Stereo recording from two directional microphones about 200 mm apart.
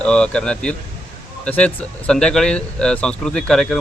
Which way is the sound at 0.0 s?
5° left (ahead or behind).